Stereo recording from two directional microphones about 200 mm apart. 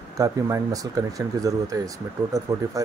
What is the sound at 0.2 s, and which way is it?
Speech, 15° right (ahead or behind).